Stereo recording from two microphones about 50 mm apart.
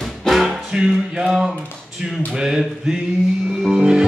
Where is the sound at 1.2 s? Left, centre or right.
Centre.